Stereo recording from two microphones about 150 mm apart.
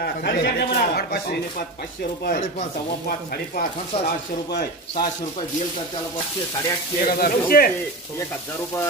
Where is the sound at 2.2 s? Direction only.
60° left (ahead or behind).